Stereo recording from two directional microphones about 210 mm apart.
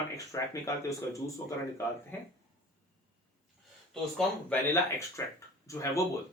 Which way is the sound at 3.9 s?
5° left (ahead or behind).